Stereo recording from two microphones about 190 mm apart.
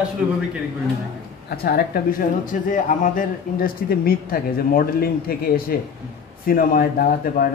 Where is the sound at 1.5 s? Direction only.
55° left (ahead or behind).